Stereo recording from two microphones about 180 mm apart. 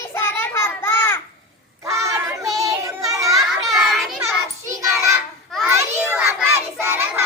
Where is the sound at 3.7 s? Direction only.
Centre (ahead or behind).